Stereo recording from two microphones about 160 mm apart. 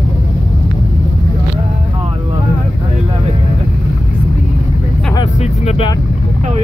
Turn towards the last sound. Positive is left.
turn(degrees=40)  # may be behind; listen again after turning